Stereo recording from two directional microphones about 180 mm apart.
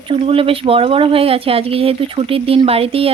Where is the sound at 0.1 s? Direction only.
30° right (ahead or behind).